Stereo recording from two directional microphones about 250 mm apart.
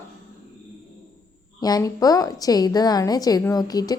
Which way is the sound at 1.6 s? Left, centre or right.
Centre.